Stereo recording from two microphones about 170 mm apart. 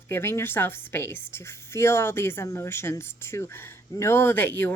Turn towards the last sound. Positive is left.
turn(degrees=10)  # may be behind; listen again after turning